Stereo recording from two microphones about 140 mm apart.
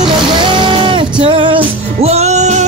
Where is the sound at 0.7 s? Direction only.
35° right (ahead or behind); by 2.6 s 55° right (ahead or behind).